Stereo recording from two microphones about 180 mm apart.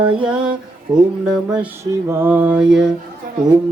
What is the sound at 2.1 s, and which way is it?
Music, 10° right (ahead or behind).